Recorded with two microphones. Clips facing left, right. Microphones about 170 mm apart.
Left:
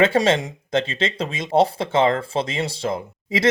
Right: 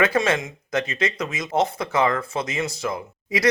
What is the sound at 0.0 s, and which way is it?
Speech, 30° left (ahead or behind).